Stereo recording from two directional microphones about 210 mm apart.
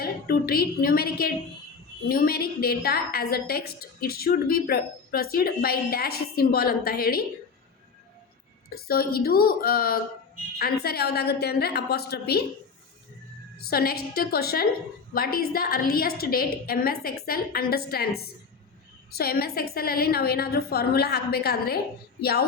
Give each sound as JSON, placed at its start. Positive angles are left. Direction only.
{"t": 0.0, "sound": "a woman's voice", "side_deg": 45}
{"t": 8.7, "sound": "a woman's voice", "side_deg": 45}
{"t": 13.7, "sound": "a woman's voice", "side_deg": 45}